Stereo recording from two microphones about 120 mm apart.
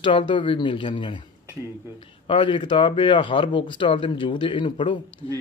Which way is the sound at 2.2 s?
45° left (ahead or behind).